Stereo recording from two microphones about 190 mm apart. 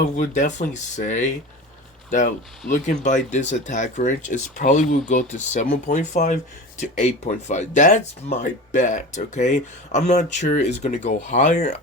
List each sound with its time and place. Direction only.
0.2 s speech: 40° left (ahead or behind)